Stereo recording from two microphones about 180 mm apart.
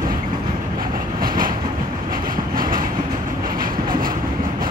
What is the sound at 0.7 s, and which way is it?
Train, 50° right (ahead or behind).